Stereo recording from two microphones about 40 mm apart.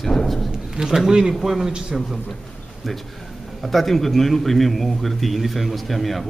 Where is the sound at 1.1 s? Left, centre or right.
Centre.